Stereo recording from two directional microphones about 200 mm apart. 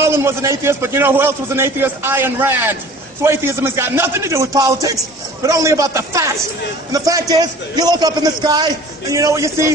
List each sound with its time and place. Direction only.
0.0 s a man's voice: 15° right (ahead or behind)